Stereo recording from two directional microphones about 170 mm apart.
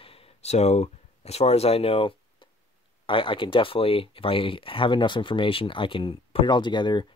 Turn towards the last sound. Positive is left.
turn(degrees=25)  # may be behind; listen again after turning